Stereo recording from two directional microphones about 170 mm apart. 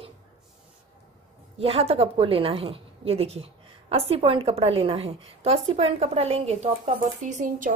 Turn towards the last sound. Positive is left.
turn(degrees=-50)  # may be behind; listen again after turning